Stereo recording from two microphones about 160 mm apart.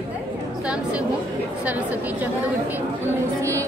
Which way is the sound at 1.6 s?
10° right (ahead or behind).